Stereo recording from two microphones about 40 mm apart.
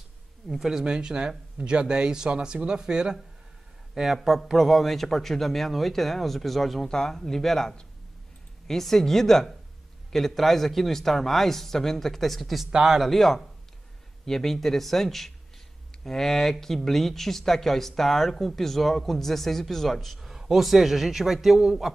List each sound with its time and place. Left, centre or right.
0.6 s speech: centre
0.8 s speech: right
3.9 s a man's voice: centre
6.9 s a man's voice: centre
12.7 s speech: centre
13.0 s a man's voice: centre
20.2 s a man's voice: centre